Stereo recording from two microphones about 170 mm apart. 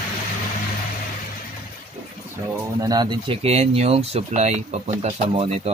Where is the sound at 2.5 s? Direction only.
20° right (ahead or behind).